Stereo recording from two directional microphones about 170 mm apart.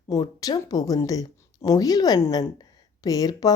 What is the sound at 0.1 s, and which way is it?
Speech, 20° left (ahead or behind).